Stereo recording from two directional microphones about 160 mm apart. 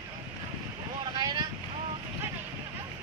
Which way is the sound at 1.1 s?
25° right (ahead or behind).